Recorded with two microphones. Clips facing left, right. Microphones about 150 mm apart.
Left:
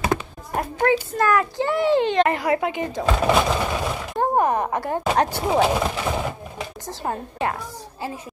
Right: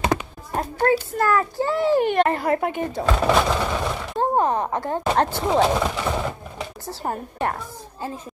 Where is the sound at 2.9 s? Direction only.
10° left (ahead or behind).